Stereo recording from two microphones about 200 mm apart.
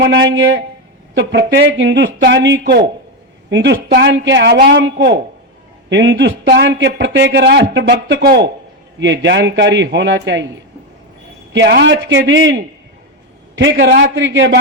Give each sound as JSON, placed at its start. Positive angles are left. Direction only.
{"t": 0.0, "sound": "a man's voice", "side_deg": -60}
{"t": 11.5, "sound": "a man's voice", "side_deg": -60}